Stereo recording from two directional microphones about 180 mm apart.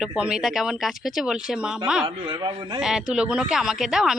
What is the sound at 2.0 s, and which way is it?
Speech, 25° right (ahead or behind).